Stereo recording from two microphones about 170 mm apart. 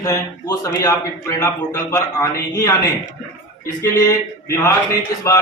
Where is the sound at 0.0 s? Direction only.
20° left (ahead or behind).